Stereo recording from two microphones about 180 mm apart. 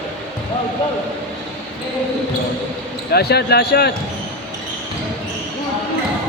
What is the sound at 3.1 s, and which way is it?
Speech, 65° left (ahead or behind).